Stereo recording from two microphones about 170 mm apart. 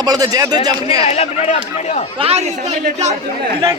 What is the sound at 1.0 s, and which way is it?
Speech, 40° left (ahead or behind).